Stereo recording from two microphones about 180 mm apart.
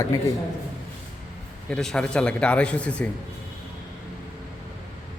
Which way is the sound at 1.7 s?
5° left (ahead or behind).